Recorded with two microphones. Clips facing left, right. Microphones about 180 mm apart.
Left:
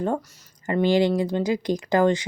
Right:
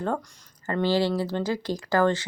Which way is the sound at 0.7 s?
15° left (ahead or behind).